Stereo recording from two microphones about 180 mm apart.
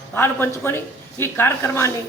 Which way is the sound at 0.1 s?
10° left (ahead or behind).